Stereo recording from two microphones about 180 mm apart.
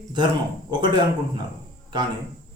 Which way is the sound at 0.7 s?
25° right (ahead or behind).